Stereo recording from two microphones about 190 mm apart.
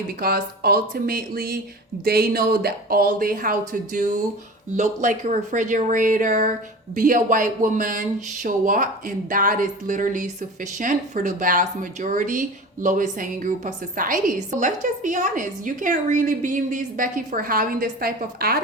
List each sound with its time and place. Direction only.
0.2 s a woman's voice: 50° right (ahead or behind)